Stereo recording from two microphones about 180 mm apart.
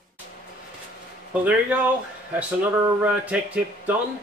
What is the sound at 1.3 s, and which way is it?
Speech, 10° right (ahead or behind).